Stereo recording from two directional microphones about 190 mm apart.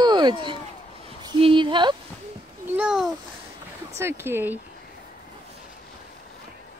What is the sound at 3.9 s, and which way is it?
Speech, 10° right (ahead or behind).